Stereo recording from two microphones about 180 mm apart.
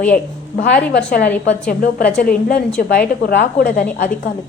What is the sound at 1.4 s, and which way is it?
A woman's voice, 55° left (ahead or behind).